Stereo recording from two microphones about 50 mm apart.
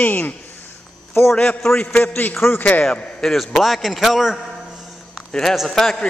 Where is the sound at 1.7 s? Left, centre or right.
Left.